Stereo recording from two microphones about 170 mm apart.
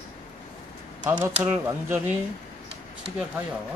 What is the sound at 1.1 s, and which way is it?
Speech, 10° right (ahead or behind).